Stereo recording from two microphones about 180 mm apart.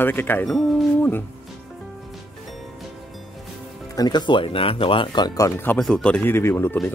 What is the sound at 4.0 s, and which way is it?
Speech, 25° left (ahead or behind).